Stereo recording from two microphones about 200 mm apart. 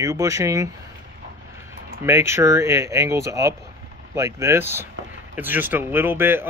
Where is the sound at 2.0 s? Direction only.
15° right (ahead or behind).